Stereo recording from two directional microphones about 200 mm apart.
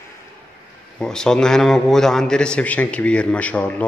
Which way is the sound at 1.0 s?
5° left (ahead or behind).